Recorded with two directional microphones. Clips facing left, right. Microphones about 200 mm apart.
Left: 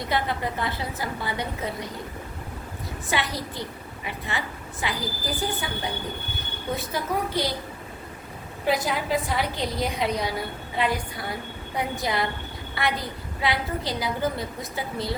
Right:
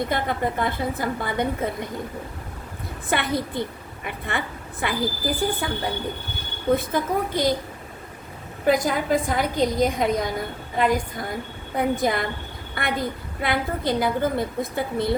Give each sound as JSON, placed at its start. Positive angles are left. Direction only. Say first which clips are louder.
{"t": 0.0, "sound": "a woman's voice", "louder": "right 3 dB", "side_deg": -50}
{"t": 3.1, "sound": "a woman's voice", "louder": "right 5 dB", "side_deg": -55}
{"t": 8.6, "sound": "a woman's voice", "louder": "right 4 dB", "side_deg": -50}